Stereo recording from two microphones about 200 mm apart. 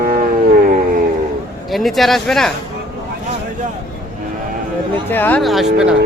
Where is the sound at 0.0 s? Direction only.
45° right (ahead or behind).